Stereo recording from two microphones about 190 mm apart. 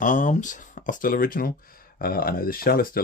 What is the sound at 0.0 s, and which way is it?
Speech, 40° left (ahead or behind).